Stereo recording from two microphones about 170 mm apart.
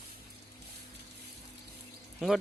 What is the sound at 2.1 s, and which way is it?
Speech, centre (ahead or behind).